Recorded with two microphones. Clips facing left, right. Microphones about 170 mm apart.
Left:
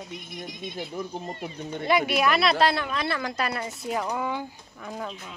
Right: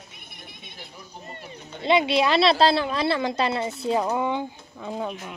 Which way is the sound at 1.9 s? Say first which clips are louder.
Right 3 dB; 25° right (ahead or behind).